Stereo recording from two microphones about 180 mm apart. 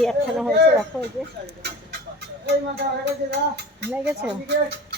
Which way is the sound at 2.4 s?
70° right (ahead or behind).